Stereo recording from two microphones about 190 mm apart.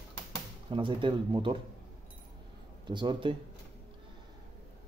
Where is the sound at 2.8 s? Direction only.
25° right (ahead or behind).